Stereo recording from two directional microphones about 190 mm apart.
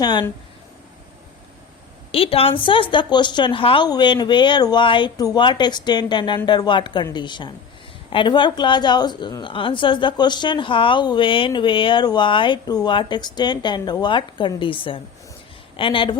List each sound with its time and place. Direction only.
0.0 s a woman's voice: 25° left (ahead or behind)
2.1 s a woman's voice: 30° left (ahead or behind)